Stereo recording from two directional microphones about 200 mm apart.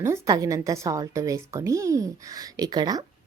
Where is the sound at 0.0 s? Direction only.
15° right (ahead or behind).